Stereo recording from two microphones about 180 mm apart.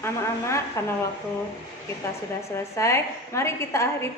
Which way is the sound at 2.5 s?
15° left (ahead or behind).